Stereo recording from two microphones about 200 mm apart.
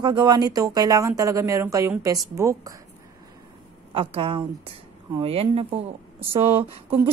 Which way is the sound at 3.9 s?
25° right (ahead or behind).